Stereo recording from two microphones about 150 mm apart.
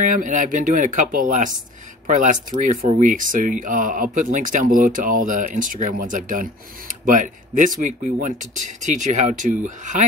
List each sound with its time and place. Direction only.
0.0 s speech: 55° right (ahead or behind)